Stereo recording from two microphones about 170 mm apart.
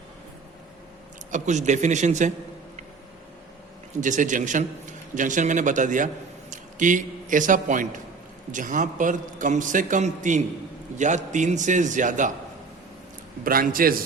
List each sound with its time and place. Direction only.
1.3 s a man's voice: 45° right (ahead or behind)
4.0 s a man's voice: 50° right (ahead or behind)
13.4 s a man's voice: 55° right (ahead or behind)